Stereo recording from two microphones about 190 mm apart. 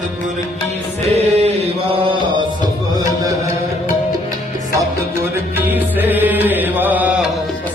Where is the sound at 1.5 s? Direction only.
30° right (ahead or behind).